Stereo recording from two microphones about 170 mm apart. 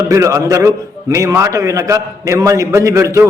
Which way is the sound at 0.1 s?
20° right (ahead or behind).